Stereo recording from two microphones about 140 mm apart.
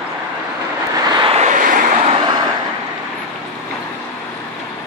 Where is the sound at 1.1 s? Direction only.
40° right (ahead or behind).